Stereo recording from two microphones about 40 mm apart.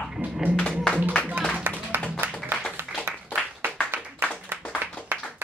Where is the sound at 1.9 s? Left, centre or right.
Right.